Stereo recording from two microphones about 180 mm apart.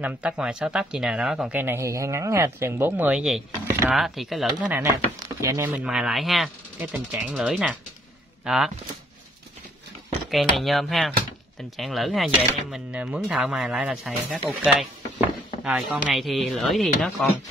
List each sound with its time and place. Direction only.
0.0 s speech: 5° right (ahead or behind)
3.6 s speech: 15° right (ahead or behind)
3.9 s speech: centre (ahead or behind); by 5.7 s 15° right (ahead or behind)
5.9 s speech: 5° right (ahead or behind)
10.3 s speech: centre (ahead or behind)